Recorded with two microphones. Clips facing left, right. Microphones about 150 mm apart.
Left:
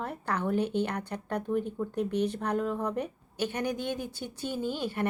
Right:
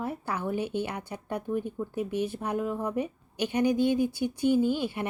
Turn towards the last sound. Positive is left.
turn(degrees=-10)  # may be behind; listen again after turning